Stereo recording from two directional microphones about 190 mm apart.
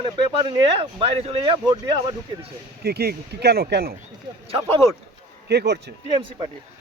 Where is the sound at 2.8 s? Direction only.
55° right (ahead or behind).